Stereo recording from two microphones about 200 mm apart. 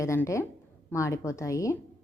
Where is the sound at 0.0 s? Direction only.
15° left (ahead or behind).